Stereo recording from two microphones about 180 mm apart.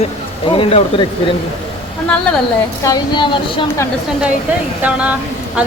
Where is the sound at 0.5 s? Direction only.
30° left (ahead or behind).